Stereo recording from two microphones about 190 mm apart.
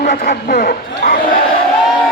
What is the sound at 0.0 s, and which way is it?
A man's voice, 40° left (ahead or behind).